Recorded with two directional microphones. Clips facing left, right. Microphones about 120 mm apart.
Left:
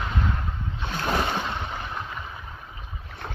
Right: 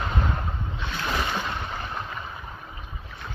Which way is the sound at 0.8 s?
40° left (ahead or behind).